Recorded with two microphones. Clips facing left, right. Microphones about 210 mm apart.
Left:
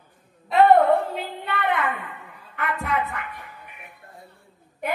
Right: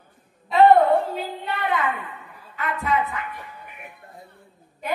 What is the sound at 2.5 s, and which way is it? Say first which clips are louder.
Speech: right 2 dB; 60° left (ahead or behind).